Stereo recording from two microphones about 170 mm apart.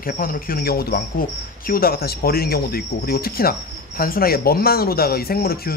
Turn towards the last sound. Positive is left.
turn(degrees=65)  # may be behind; listen again after turning